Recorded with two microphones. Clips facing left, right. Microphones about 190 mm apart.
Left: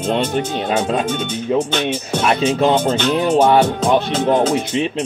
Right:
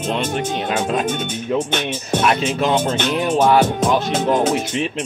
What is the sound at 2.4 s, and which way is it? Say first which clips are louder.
Speech: left 3 dB; 35° left (ahead or behind).